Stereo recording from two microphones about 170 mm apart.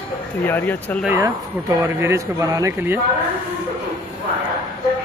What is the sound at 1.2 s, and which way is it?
Speech, 15° right (ahead or behind).